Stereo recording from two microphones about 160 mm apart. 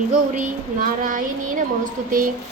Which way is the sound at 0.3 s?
55° right (ahead or behind).